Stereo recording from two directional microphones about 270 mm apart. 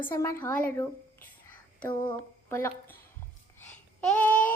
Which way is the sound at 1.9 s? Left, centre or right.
Centre.